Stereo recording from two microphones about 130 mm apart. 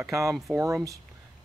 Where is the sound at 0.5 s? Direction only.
25° right (ahead or behind).